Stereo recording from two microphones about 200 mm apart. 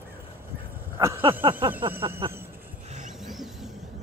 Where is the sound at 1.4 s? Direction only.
25° right (ahead or behind).